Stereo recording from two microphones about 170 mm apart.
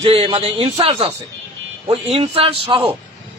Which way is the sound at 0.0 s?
35° right (ahead or behind).